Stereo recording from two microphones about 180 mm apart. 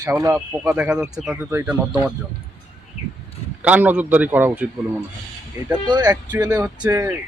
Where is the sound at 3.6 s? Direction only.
10° right (ahead or behind).